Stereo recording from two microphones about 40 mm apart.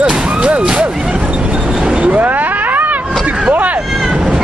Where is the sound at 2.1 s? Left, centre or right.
Right.